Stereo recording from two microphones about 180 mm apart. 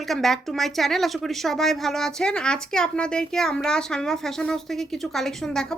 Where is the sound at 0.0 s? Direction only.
Centre (ahead or behind).